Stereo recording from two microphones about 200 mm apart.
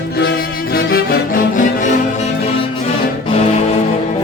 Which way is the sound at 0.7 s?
45° left (ahead or behind).